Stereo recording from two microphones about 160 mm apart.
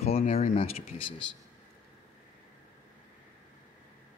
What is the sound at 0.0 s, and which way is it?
Speech, 40° left (ahead or behind).